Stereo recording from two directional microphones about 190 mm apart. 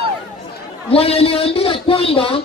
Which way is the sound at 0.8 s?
30° left (ahead or behind).